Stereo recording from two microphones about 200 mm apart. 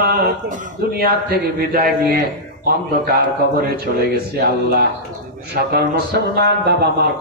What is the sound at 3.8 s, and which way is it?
A man's voice, 50° right (ahead or behind).